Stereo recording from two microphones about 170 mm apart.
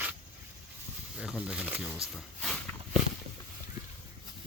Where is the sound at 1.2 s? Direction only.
5° right (ahead or behind).